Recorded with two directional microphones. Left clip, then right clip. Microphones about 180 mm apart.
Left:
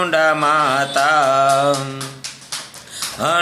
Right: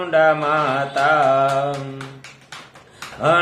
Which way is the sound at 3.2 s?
15° left (ahead or behind).